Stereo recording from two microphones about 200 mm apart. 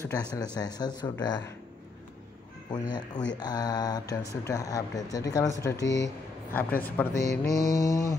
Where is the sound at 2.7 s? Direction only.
20° left (ahead or behind).